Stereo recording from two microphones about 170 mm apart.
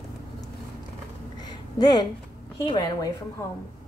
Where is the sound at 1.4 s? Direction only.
25° left (ahead or behind).